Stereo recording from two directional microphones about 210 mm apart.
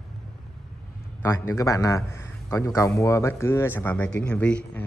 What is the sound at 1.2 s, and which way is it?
A man's voice, 15° left (ahead or behind).